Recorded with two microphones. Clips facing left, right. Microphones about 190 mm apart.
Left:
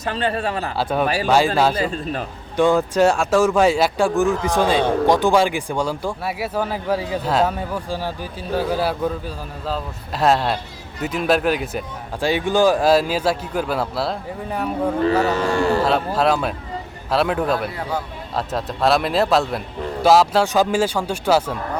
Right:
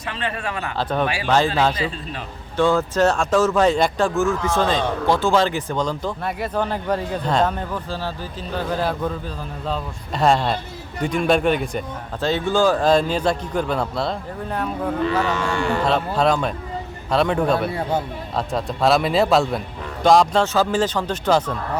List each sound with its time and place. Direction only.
0.0 s speech: 35° left (ahead or behind)
0.8 s speech: 10° left (ahead or behind)
1.0 s a man's voice: 40° left (ahead or behind)
2.6 s speech: 15° left (ahead or behind)
15.0 s speech: 40° left (ahead or behind)
15.8 s speech: 5° left (ahead or behind)
17.7 s speech: 25° right (ahead or behind)
18.3 s speech: centre (ahead or behind)